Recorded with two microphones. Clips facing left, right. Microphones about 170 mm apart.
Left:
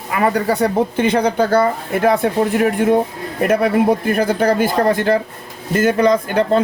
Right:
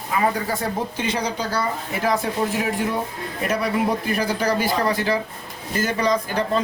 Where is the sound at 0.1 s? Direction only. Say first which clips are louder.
Left 6 dB; 65° left (ahead or behind).